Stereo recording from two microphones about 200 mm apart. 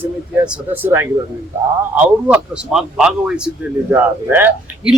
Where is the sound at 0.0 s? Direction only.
10° right (ahead or behind).